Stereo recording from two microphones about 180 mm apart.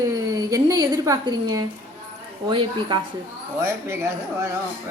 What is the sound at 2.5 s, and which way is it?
Speech, 25° right (ahead or behind).